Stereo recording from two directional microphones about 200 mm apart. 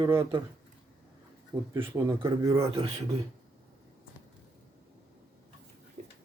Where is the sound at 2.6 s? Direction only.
30° right (ahead or behind).